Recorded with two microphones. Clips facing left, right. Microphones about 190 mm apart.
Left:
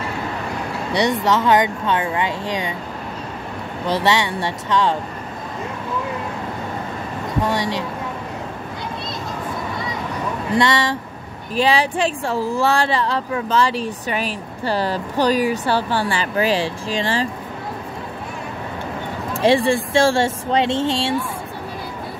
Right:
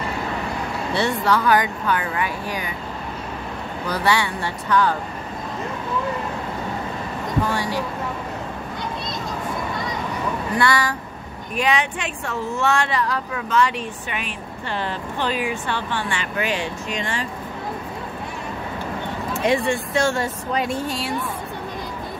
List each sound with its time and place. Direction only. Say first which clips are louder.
0.9 s speech: left 3 dB; 20° left (ahead or behind)
3.8 s speech: left 3 dB; 25° left (ahead or behind)
10.5 s speech: left 4 dB; 25° left (ahead or behind)
19.3 s speech: left 5 dB; 30° left (ahead or behind)